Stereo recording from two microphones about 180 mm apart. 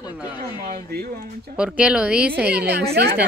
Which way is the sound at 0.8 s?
60° right (ahead or behind).